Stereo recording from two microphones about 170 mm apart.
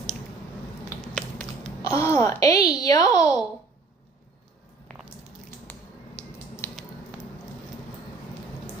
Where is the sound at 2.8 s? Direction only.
20° left (ahead or behind).